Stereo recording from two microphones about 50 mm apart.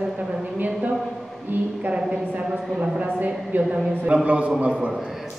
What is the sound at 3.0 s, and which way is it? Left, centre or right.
A woman's voice, right.